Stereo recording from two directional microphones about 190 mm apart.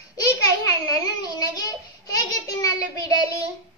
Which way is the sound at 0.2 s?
20° left (ahead or behind).